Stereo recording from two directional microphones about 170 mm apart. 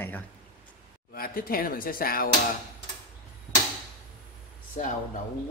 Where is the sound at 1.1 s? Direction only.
60° left (ahead or behind).